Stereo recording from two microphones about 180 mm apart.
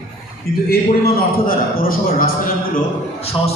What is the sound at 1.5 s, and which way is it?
Speech, 55° left (ahead or behind).